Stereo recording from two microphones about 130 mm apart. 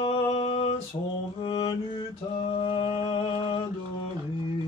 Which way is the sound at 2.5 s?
40° left (ahead or behind).